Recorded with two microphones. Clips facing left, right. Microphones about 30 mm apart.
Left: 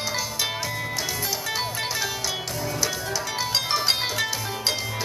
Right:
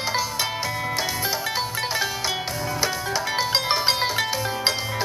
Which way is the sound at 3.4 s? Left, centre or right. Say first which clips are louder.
Right 1 dB; right.